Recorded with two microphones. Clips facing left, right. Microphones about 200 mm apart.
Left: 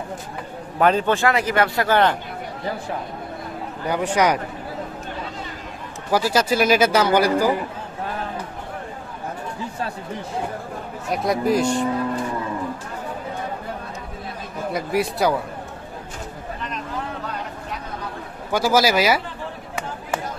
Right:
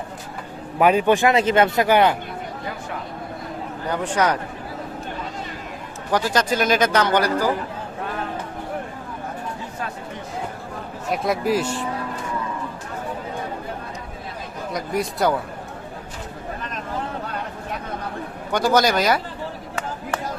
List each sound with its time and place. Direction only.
0.8 s speech: 10° right (ahead or behind)
3.8 s speech: 10° left (ahead or behind)
6.1 s speech: 10° left (ahead or behind)
11.1 s speech: centre (ahead or behind)
14.7 s speech: 5° left (ahead or behind)
18.5 s speech: 5° left (ahead or behind)